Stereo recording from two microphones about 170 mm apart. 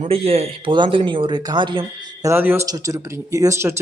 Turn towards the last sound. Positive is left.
turn(degrees=-15)  # may be behind; listen again after turning